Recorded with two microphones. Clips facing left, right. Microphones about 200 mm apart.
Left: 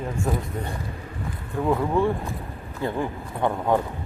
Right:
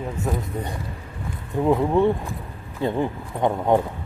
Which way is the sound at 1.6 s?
20° right (ahead or behind).